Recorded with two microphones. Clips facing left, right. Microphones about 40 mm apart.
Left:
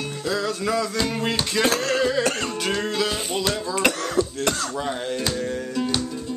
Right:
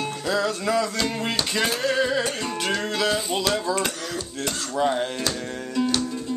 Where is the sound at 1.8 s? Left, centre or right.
Centre.